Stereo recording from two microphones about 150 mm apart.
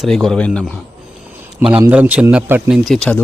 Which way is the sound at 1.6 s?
15° right (ahead or behind).